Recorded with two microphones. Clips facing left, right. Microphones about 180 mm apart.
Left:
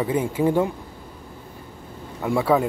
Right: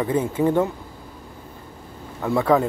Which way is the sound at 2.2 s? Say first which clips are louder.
Right 1 dB; 10° left (ahead or behind).